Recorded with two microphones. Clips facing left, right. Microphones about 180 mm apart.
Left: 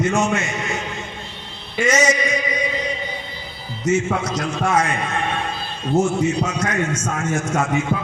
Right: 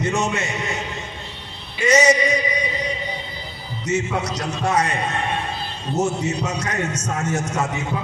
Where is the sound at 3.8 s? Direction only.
35° right (ahead or behind).